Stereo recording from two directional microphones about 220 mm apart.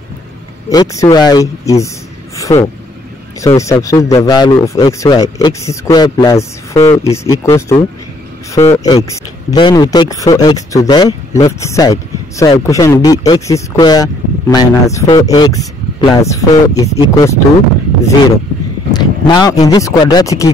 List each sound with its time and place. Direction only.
0.7 s speech: 15° left (ahead or behind)
18.9 s speech: 20° left (ahead or behind)